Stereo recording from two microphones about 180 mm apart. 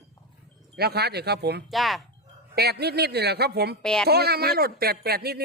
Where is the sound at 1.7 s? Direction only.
Centre (ahead or behind).